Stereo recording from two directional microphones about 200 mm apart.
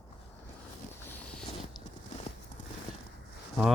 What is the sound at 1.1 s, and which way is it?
Boat, 5° left (ahead or behind).